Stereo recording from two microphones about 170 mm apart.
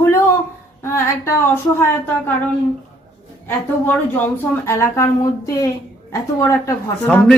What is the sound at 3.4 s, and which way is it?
A woman's voice, 10° left (ahead or behind).